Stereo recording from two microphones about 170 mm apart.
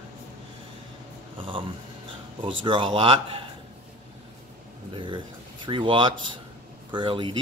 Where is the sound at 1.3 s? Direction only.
30° right (ahead or behind).